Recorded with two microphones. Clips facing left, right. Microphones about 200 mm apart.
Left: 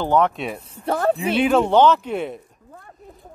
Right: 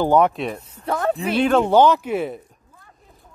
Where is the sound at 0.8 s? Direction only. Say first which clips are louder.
Left 2 dB; 30° left (ahead or behind).